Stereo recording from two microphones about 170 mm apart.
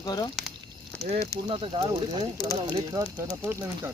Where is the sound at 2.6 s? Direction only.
20° right (ahead or behind).